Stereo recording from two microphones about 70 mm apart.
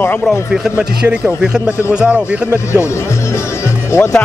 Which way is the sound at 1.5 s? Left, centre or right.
Centre.